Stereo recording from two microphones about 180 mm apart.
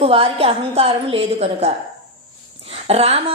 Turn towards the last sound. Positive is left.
turn(degrees=-35)  # may be behind; listen again after turning